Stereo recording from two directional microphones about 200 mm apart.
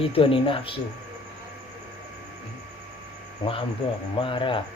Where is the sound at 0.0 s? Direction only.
25° left (ahead or behind).